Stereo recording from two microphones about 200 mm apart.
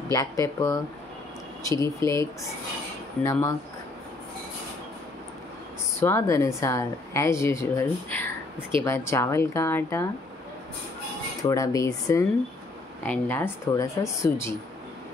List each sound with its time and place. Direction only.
0.1 s speech: 15° left (ahead or behind)
3.3 s speech: 15° left (ahead or behind)
5.9 s speech: 15° left (ahead or behind)
11.4 s speech: 15° left (ahead or behind)